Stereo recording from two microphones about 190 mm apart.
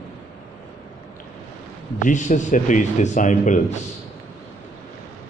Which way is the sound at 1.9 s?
40° left (ahead or behind).